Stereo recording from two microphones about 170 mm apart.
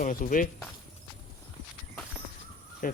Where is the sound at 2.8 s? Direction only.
55° left (ahead or behind).